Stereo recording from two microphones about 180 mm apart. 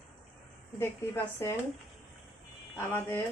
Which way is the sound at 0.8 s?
15° left (ahead or behind).